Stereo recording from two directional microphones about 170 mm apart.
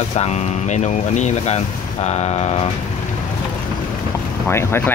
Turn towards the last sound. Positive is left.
turn(degrees=15)  # may be behind; listen again after turning